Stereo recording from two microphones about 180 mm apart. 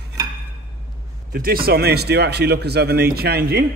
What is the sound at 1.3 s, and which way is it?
A man's voice, 55° right (ahead or behind).